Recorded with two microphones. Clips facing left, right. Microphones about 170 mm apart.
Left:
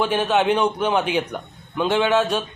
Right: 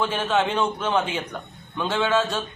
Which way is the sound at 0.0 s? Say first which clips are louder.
Left 4 dB; 15° left (ahead or behind).